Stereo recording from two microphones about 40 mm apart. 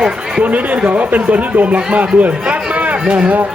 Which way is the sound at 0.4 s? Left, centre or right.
Right.